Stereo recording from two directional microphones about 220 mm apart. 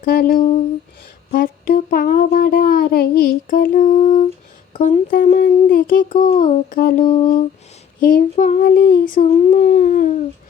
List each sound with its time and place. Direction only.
0.0 s speech: 40° left (ahead or behind)